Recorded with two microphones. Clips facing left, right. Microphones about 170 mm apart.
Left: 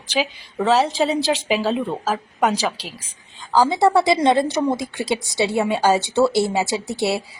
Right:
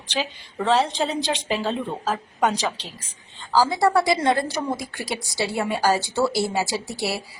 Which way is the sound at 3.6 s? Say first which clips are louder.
Left 3 dB; 20° left (ahead or behind).